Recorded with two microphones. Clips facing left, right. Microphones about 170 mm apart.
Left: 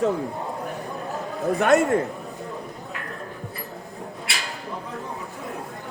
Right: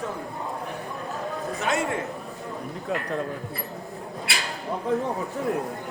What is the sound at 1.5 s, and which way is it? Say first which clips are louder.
Speech: left 9 dB; 55° left (ahead or behind).